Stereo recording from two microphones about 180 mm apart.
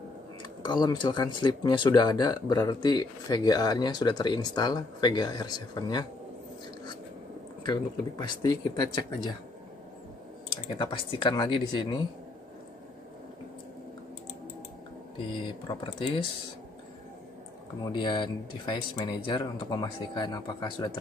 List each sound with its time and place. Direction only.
0.4 s speech: 25° left (ahead or behind)
7.6 s speech: 25° left (ahead or behind)
10.8 s speech: 30° left (ahead or behind)
15.7 s speech: 25° left (ahead or behind)
17.9 s speech: 25° left (ahead or behind)